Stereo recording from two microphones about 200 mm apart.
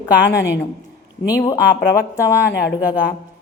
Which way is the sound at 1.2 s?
15° left (ahead or behind).